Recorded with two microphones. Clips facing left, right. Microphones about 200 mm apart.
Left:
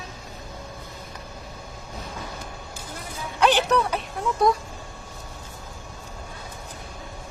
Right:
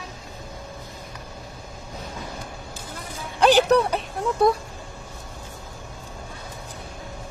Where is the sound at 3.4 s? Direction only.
35° right (ahead or behind).